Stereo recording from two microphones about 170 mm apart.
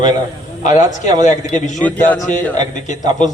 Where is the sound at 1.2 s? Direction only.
45° left (ahead or behind).